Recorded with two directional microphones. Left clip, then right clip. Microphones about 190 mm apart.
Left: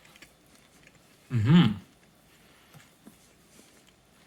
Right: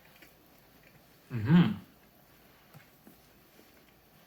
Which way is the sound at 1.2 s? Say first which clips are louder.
Left 4 dB; 45° left (ahead or behind).